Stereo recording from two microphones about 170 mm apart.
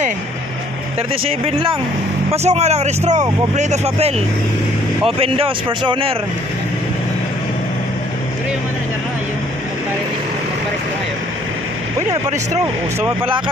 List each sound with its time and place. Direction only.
2.3 s speech: 40° right (ahead or behind)
5.2 s speech: 30° right (ahead or behind)